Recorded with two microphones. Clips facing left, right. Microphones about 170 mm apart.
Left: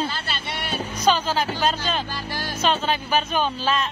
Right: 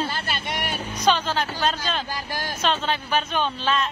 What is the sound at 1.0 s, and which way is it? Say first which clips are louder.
Speech: left 1 dB; 5° left (ahead or behind).